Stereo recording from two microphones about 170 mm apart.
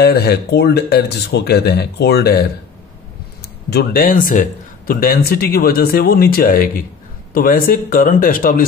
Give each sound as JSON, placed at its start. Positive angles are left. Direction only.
{"t": 0.0, "sound": "speech", "side_deg": 70}
{"t": 3.7, "sound": "speech", "side_deg": 60}